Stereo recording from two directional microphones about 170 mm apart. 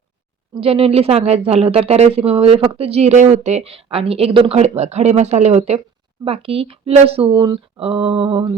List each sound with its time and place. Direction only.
0.5 s speech: 35° right (ahead or behind)